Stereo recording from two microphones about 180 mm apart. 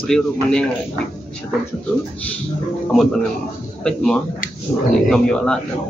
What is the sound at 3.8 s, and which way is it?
A man's voice, 5° left (ahead or behind).